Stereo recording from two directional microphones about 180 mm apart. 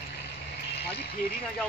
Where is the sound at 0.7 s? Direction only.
65° left (ahead or behind).